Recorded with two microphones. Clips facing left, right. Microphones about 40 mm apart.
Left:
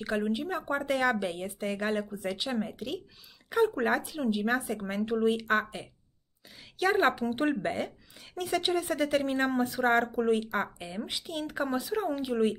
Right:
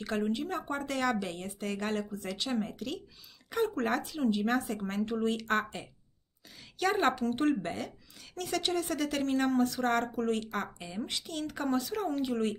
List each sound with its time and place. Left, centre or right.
0.0 s speech: centre